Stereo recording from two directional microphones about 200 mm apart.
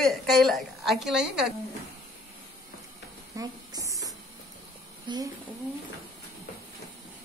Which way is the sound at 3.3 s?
15° right (ahead or behind).